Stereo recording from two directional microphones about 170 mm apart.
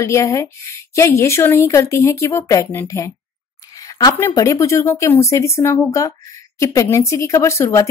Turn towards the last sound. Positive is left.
turn(degrees=20)  # may be behind; listen again after turning